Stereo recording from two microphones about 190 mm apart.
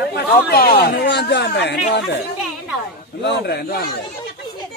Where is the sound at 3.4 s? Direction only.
55° left (ahead or behind).